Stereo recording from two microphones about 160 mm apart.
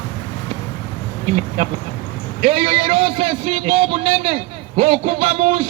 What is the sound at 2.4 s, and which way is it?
A man's voice, 40° right (ahead or behind).